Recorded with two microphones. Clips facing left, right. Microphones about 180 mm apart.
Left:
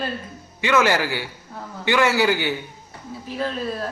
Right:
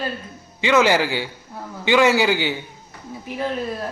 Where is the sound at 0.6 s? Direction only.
20° right (ahead or behind).